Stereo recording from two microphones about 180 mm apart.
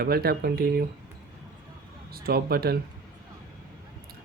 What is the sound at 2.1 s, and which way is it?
Speech, 60° right (ahead or behind).